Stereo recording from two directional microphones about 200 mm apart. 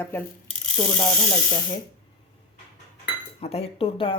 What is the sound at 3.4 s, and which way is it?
Speech, 30° left (ahead or behind).